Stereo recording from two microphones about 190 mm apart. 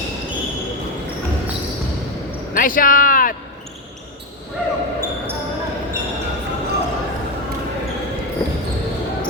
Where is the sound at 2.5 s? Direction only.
45° left (ahead or behind).